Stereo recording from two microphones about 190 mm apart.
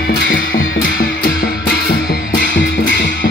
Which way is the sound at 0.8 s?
50° left (ahead or behind).